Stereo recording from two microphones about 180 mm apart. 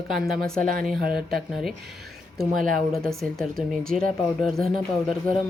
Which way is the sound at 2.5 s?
50° right (ahead or behind).